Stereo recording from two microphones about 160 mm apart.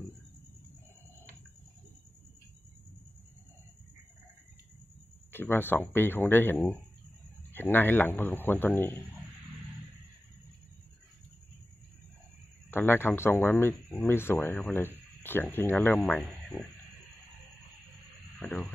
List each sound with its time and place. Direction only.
5.3 s speech: 15° left (ahead or behind)
12.7 s speech: 15° left (ahead or behind)
18.4 s speech: 10° left (ahead or behind)